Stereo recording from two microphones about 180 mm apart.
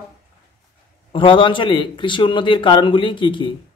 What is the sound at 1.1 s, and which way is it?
A man's voice, 25° left (ahead or behind).